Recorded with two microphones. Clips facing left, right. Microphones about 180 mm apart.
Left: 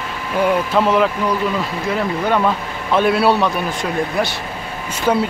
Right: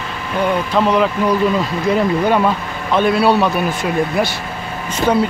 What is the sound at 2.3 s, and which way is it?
Speech, 10° right (ahead or behind).